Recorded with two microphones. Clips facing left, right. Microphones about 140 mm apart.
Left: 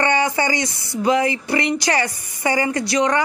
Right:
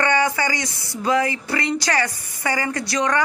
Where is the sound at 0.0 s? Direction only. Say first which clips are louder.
Left 1 dB; 25° left (ahead or behind).